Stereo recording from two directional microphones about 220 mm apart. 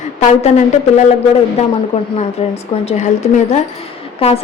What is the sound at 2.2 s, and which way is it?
Speech, 30° left (ahead or behind).